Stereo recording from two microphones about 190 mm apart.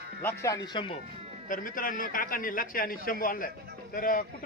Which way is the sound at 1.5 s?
45° left (ahead or behind).